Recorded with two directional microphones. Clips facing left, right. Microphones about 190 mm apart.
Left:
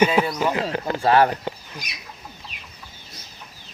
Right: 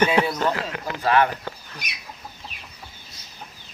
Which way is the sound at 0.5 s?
30° left (ahead or behind).